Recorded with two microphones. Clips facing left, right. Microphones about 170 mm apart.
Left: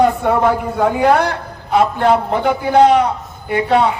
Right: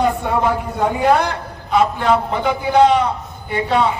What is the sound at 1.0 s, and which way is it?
A man's voice, 60° left (ahead or behind).